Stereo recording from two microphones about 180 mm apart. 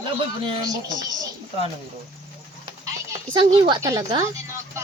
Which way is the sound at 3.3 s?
25° right (ahead or behind).